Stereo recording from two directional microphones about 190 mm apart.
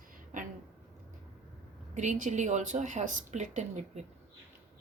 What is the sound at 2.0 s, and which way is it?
Speech, 40° right (ahead or behind).